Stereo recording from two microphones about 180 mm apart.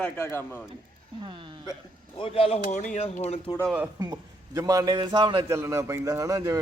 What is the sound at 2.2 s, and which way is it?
Speech, 30° left (ahead or behind).